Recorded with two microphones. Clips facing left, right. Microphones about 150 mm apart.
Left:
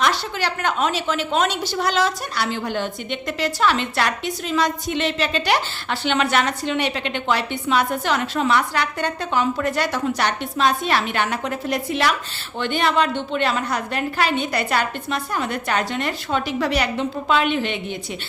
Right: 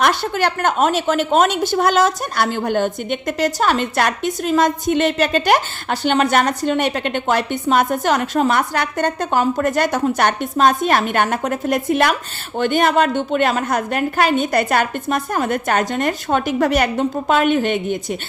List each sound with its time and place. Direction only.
0.0 s a woman's voice: 50° right (ahead or behind)